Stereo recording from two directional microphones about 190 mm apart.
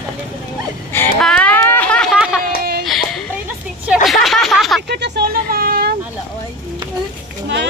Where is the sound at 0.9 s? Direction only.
5° left (ahead or behind).